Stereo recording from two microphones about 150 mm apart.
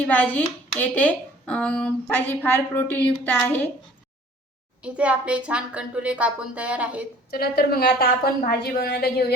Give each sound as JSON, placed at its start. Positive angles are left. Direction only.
{"t": 0.0, "sound": "a child's voice", "side_deg": 10}
{"t": 4.8, "sound": "speech", "side_deg": -10}
{"t": 7.3, "sound": "a woman's voice", "side_deg": 90}